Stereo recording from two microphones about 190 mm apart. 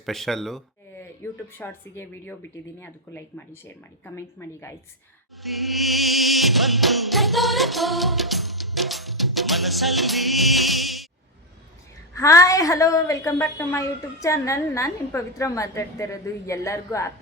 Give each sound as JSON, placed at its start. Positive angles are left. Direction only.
{"t": 0.0, "sound": "a woman's voice", "side_deg": 0}
{"t": 5.4, "sound": "insect", "side_deg": 0}
{"t": 12.1, "sound": "a woman's voice", "side_deg": 15}